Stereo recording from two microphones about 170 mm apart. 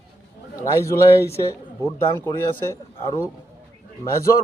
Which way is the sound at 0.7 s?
15° left (ahead or behind).